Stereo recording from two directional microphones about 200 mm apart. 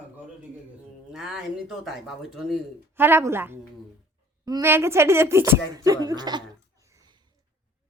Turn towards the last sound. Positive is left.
turn(degrees=-15)  # may be behind; listen again after turning